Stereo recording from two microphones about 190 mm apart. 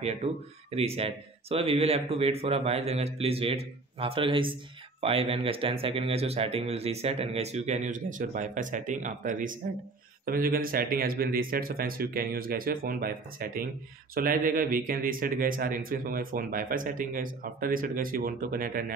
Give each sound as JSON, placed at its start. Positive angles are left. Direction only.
{"t": 0.0, "sound": "a man's voice", "side_deg": -35}